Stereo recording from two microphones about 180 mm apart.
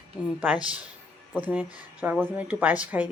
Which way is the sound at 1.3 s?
10° right (ahead or behind).